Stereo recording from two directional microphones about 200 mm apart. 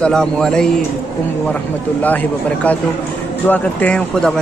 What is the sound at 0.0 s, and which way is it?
Speech, 5° left (ahead or behind).